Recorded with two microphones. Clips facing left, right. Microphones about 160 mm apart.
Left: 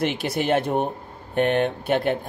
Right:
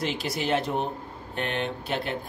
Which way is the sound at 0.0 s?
60° left (ahead or behind).